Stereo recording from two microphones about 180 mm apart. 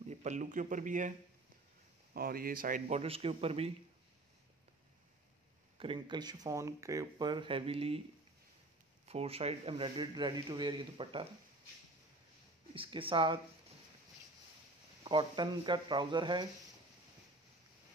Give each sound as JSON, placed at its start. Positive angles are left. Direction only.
{"t": 0.1, "sound": "speech", "side_deg": -40}
{"t": 2.1, "sound": "speech", "side_deg": -55}
{"t": 3.0, "sound": "a man's voice", "side_deg": -30}
{"t": 5.8, "sound": "speech", "side_deg": -25}
{"t": 9.0, "sound": "speech", "side_deg": -35}
{"t": 12.7, "sound": "speech", "side_deg": -30}
{"t": 15.0, "sound": "speech", "side_deg": -25}